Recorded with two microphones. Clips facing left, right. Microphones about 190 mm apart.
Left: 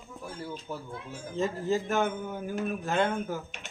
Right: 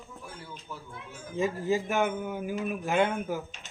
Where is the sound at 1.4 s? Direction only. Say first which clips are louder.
Right 1 dB; 10° right (ahead or behind).